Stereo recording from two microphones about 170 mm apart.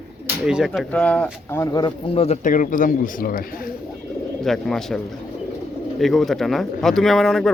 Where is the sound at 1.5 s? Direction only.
20° left (ahead or behind).